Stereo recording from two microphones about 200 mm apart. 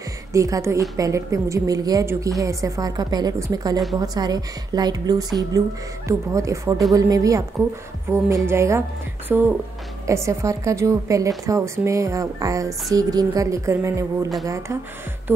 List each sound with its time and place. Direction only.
0.3 s a woman's voice: 15° right (ahead or behind)